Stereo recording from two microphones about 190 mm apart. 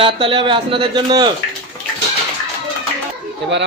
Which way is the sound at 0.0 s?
25° right (ahead or behind).